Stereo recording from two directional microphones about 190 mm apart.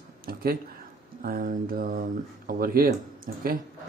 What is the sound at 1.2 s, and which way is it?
Speech, 50° right (ahead or behind).